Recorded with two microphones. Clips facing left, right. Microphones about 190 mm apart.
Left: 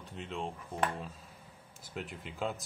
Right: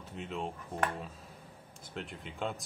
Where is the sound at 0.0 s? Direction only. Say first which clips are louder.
Right 1 dB; 5° right (ahead or behind).